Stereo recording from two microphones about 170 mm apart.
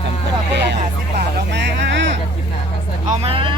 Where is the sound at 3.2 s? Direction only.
30° right (ahead or behind).